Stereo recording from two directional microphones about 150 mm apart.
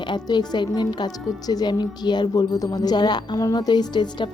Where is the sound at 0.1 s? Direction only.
30° left (ahead or behind).